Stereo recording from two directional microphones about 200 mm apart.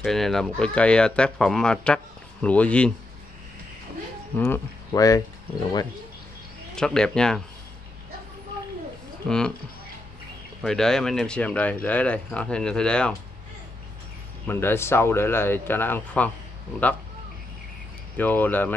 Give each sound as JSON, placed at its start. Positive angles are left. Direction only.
{"t": 0.0, "sound": "speech", "side_deg": 0}
{"t": 4.4, "sound": "speech", "side_deg": 15}
{"t": 6.7, "sound": "speech", "side_deg": 5}
{"t": 10.6, "sound": "speech", "side_deg": 5}
{"t": 14.5, "sound": "speech", "side_deg": 10}
{"t": 18.1, "sound": "speech", "side_deg": 10}